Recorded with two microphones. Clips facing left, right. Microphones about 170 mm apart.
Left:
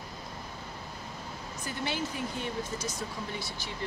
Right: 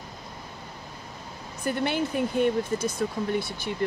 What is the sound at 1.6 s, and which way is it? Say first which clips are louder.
Speech: right 8 dB; 60° right (ahead or behind).